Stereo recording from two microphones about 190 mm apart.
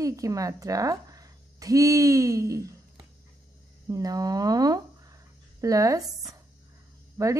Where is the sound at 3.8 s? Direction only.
20° right (ahead or behind).